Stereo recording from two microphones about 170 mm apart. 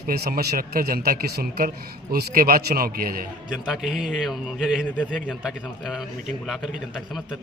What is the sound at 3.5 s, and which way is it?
A man's voice, centre (ahead or behind).